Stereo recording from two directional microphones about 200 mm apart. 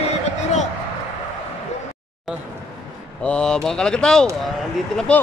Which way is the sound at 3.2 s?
5° left (ahead or behind).